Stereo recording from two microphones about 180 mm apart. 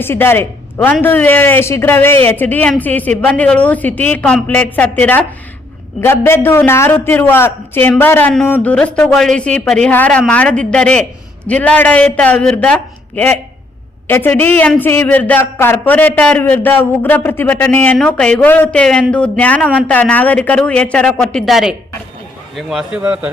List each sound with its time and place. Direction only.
0.0 s a man's voice: 10° left (ahead or behind); by 23.3 s 5° right (ahead or behind)